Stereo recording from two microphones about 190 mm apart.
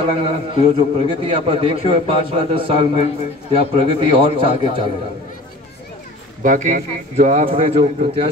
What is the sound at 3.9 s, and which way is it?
Speech, 25° right (ahead or behind).